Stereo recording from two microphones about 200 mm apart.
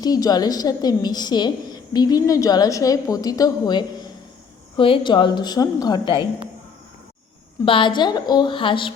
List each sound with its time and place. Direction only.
0.0 s a woman's voice: 20° left (ahead or behind)
7.6 s a woman's voice: 25° left (ahead or behind)